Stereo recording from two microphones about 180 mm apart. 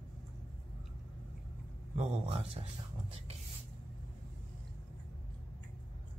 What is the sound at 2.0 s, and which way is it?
Speech, 35° right (ahead or behind).